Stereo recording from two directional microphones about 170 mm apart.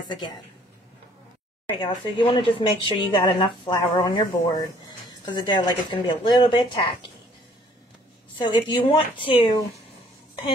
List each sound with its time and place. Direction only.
1.8 s speech: 30° left (ahead or behind)
8.4 s speech: 30° left (ahead or behind)